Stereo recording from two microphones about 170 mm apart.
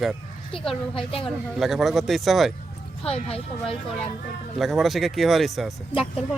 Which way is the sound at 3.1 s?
35° left (ahead or behind).